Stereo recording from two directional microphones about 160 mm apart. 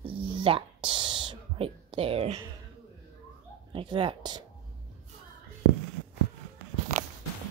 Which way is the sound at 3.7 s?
35° right (ahead or behind).